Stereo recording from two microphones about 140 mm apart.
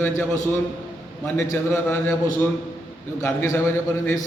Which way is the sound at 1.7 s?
20° left (ahead or behind).